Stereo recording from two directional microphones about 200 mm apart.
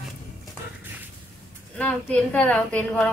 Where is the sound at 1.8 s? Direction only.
5° left (ahead or behind).